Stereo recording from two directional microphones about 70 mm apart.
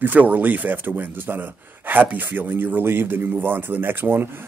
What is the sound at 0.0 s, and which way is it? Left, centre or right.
Speech, right.